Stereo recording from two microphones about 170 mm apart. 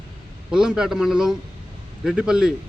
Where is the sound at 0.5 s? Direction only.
5° right (ahead or behind).